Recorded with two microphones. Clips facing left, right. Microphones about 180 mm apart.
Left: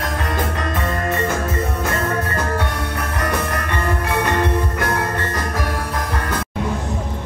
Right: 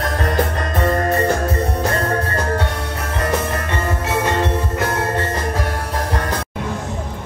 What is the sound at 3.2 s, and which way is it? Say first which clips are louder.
Music: right 3 dB; 25° right (ahead or behind).